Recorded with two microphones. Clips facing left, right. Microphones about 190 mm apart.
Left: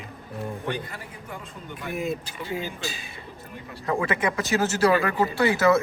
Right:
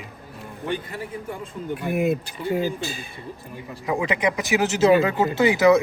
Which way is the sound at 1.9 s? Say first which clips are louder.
Right 6 dB; 60° right (ahead or behind).